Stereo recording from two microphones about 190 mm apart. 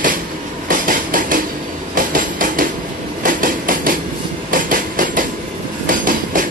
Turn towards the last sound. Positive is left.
turn(degrees=-45)  # may be behind; listen again after turning